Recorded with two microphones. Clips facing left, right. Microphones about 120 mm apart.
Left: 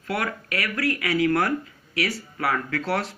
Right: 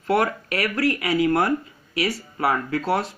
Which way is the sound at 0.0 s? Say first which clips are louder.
Right 7 dB; 35° right (ahead or behind).